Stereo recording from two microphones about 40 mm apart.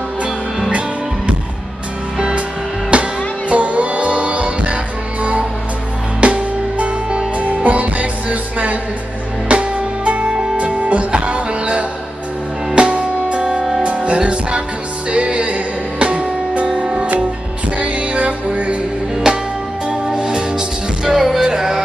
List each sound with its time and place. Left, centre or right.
0.7 s music: right
2.9 s music: right
6.2 s music: right
19.2 s music: centre